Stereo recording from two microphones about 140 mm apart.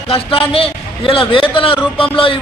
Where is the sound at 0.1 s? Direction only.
40° left (ahead or behind).